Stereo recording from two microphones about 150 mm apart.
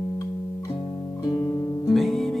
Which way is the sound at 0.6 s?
35° left (ahead or behind).